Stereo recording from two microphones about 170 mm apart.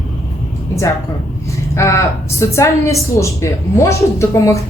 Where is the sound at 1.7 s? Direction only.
15° left (ahead or behind).